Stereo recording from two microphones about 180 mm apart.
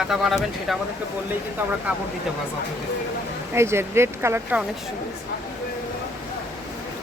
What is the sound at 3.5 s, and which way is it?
Speech, 15° right (ahead or behind).